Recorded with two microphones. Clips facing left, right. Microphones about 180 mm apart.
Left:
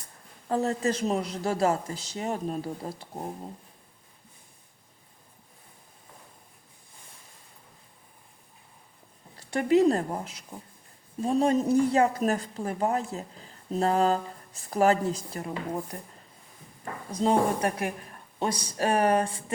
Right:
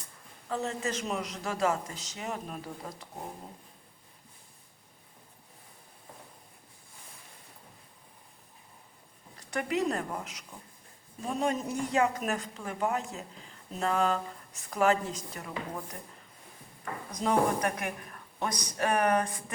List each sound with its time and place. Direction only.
0.4 s speech: 40° left (ahead or behind)
9.4 s speech: 30° left (ahead or behind)
17.1 s a woman's voice: 30° left (ahead or behind)